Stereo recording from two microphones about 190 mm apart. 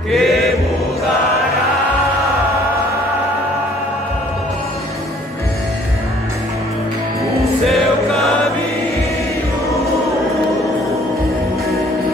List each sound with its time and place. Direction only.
0.1 s chant: centre (ahead or behind)
7.6 s music: centre (ahead or behind)